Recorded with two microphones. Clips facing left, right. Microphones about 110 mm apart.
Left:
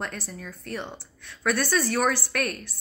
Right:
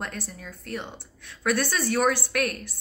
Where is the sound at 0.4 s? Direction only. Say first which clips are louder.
Left 2 dB; 20° right (ahead or behind).